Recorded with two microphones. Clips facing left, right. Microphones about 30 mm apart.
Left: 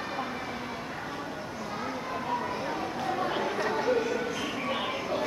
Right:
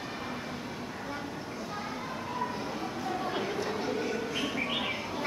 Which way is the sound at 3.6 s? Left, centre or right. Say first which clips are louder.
Left 5 dB; left.